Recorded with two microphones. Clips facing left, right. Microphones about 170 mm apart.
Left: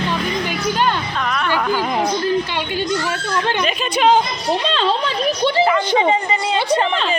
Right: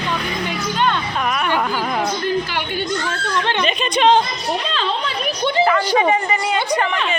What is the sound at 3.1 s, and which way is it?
Speech, 10° left (ahead or behind).